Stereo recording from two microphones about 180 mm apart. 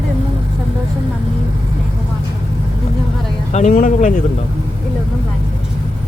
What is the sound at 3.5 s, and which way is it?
Speech, 45° left (ahead or behind).